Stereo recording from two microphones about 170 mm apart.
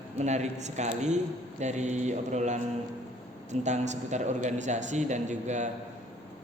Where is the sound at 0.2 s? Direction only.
40° right (ahead or behind).